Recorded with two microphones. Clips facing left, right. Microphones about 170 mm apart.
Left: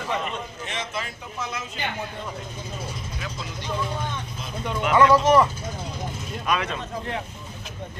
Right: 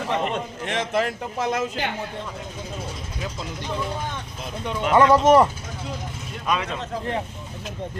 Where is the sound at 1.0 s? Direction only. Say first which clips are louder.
Right 8 dB; 85° right.